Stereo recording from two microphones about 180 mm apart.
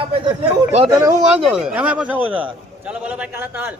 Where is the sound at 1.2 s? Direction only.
5° right (ahead or behind).